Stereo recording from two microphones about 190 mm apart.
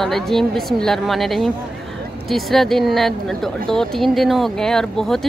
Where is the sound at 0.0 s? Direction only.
Centre (ahead or behind).